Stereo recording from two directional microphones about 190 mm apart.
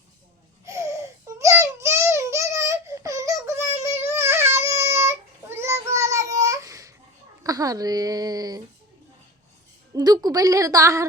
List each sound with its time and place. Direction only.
0.6 s baby cry: 15° right (ahead or behind)
7.4 s a woman's voice: 20° right (ahead or behind)
9.9 s a woman's voice: 20° right (ahead or behind)